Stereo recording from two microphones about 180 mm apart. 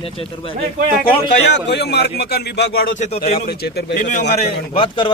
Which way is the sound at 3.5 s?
65° left (ahead or behind).